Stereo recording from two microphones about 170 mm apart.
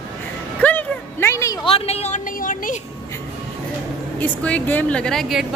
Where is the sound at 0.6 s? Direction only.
10° left (ahead or behind).